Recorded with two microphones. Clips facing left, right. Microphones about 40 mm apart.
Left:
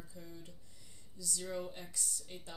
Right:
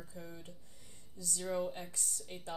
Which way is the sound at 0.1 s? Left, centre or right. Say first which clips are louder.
Right 3 dB; right.